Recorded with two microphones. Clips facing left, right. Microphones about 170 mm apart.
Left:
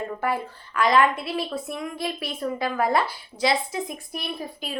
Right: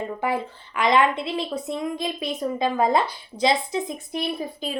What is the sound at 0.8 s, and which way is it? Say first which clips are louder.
Speech: even; 20° right (ahead or behind).